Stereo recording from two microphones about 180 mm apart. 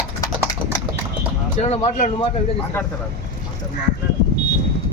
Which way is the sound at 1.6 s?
35° left (ahead or behind).